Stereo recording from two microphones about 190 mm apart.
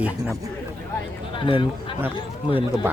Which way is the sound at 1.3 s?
25° left (ahead or behind).